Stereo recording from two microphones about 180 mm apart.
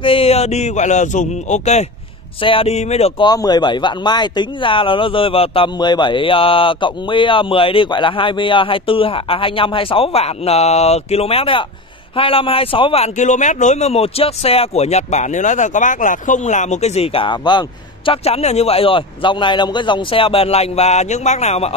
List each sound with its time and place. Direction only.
0.0 s a man's voice: 30° left (ahead or behind)
3.3 s a man's voice: 20° left (ahead or behind)